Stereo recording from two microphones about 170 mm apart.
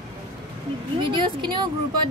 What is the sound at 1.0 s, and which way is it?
Speech, 30° right (ahead or behind).